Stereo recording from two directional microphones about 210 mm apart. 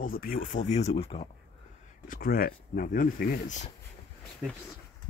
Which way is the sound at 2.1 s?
45° left (ahead or behind).